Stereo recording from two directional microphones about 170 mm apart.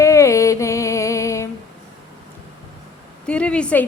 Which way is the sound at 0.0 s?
20° left (ahead or behind).